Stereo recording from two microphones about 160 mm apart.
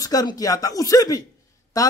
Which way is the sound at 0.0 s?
20° left (ahead or behind).